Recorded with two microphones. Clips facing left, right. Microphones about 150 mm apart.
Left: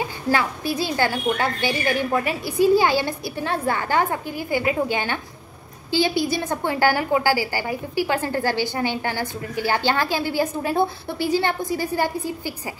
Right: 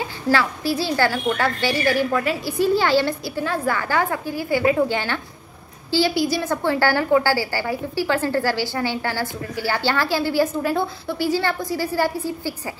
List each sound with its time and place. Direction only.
0.3 s a woman's voice: 20° left (ahead or behind)